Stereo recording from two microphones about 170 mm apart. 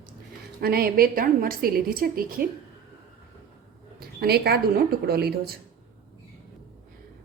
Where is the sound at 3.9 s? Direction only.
65° right (ahead or behind).